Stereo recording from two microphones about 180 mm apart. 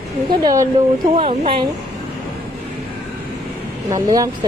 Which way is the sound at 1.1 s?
30° right (ahead or behind).